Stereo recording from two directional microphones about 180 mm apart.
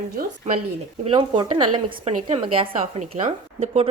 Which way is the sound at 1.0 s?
25° right (ahead or behind).